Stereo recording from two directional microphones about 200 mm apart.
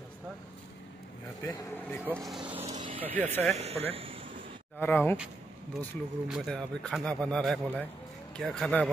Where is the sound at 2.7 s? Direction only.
25° right (ahead or behind).